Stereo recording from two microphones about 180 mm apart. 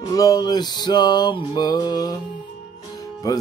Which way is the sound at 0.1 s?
20° left (ahead or behind).